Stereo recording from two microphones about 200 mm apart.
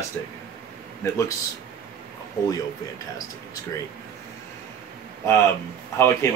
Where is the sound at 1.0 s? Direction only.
15° left (ahead or behind).